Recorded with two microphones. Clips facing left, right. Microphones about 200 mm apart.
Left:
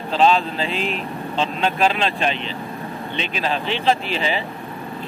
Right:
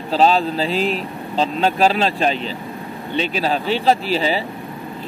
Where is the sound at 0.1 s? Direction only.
40° right (ahead or behind).